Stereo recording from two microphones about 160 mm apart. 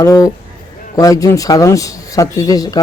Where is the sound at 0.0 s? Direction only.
20° left (ahead or behind).